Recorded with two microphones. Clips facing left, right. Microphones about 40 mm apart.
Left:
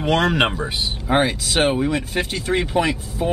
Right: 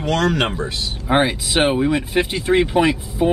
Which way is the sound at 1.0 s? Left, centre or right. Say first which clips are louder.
Right 2 dB; centre.